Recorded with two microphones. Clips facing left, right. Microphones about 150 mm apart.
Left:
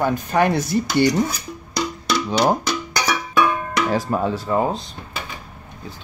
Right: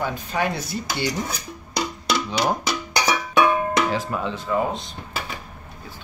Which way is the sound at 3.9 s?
40° left (ahead or behind).